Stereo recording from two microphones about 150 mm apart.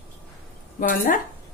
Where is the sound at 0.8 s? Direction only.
65° left (ahead or behind).